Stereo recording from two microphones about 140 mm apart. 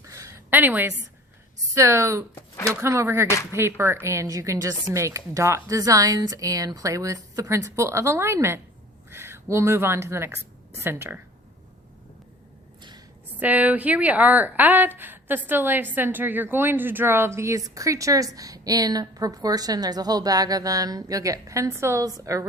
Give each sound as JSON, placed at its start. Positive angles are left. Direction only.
{"t": 0.0, "sound": "a sound", "side_deg": -20}
{"t": 1.7, "sound": "a woman's voice", "side_deg": -20}
{"t": 13.4, "sound": "a woman's voice", "side_deg": -10}